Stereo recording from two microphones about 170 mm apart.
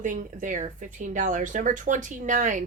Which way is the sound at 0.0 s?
50° right (ahead or behind).